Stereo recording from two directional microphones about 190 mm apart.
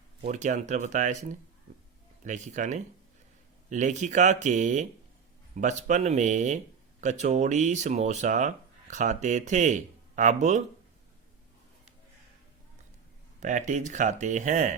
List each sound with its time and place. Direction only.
0.3 s speech: 40° right (ahead or behind)
13.4 s speech: 40° right (ahead or behind)